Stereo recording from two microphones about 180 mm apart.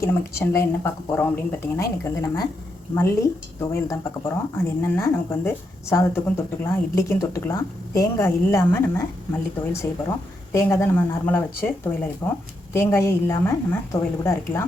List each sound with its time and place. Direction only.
0.0 s a woman's voice: 15° left (ahead or behind)
10.5 s a woman's voice: 15° left (ahead or behind)